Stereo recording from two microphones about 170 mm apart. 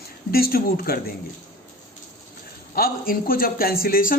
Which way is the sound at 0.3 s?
60° left (ahead or behind).